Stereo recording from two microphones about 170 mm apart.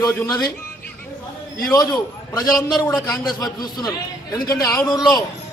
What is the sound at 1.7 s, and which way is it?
Speech, 20° left (ahead or behind).